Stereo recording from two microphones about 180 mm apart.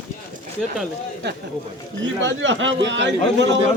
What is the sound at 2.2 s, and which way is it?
A man's voice, 90° right.